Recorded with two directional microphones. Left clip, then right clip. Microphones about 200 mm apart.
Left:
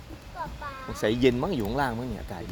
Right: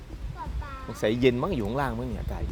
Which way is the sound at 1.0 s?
25° right (ahead or behind).